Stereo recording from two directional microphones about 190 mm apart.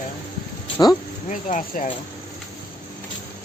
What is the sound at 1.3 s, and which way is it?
Speech, 45° left (ahead or behind).